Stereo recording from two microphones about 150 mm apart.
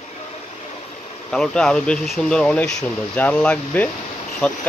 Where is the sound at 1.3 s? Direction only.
5° left (ahead or behind).